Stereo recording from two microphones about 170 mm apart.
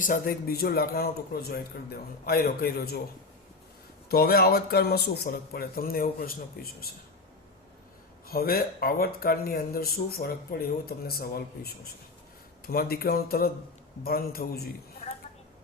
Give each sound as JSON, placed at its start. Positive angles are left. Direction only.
{"t": 0.0, "sound": "speech", "side_deg": 55}
{"t": 4.1, "sound": "speech", "side_deg": 65}
{"t": 8.3, "sound": "speech", "side_deg": 60}